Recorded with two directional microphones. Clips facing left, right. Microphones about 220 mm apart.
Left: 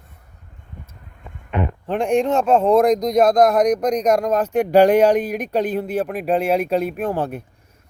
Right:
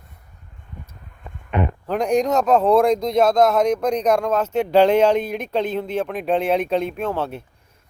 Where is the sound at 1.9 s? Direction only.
40° right (ahead or behind).